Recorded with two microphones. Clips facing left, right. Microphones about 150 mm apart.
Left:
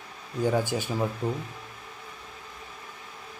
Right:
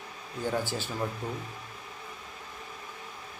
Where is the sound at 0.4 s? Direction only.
15° left (ahead or behind).